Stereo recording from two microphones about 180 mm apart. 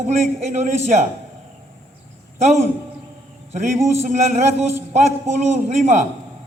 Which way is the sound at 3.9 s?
40° right (ahead or behind).